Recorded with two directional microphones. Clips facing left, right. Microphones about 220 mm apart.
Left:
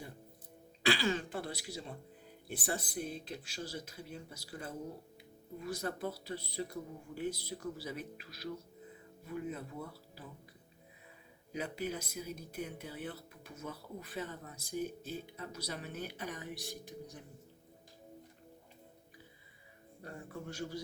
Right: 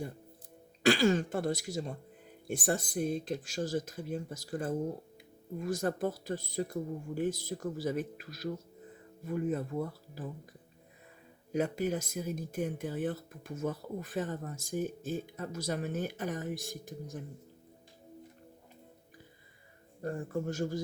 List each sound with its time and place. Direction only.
0.8 s speech: 45° right (ahead or behind)
11.5 s speech: 45° right (ahead or behind)
20.0 s speech: 45° right (ahead or behind)